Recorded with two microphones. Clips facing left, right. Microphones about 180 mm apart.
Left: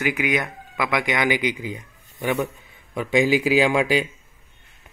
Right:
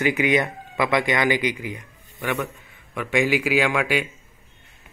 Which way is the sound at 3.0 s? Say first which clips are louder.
Left 2 dB; 30° left (ahead or behind).